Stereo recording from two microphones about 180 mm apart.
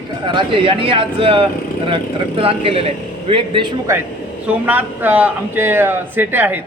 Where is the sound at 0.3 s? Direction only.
25° right (ahead or behind).